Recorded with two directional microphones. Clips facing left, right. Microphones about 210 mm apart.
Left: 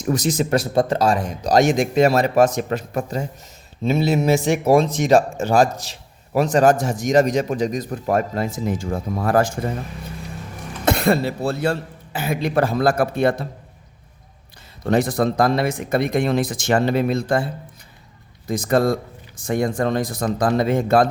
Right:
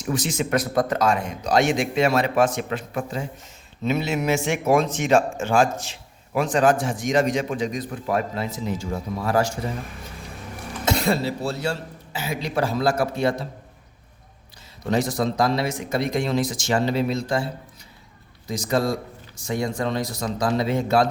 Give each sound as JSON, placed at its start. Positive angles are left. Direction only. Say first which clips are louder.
{"t": 0.0, "sound": "speech", "louder": "left 5 dB", "side_deg": 40}
{"t": 10.8, "sound": "a man's voice", "louder": "left 4 dB", "side_deg": 55}
{"t": 14.8, "sound": "a man's voice", "louder": "left 4 dB", "side_deg": 55}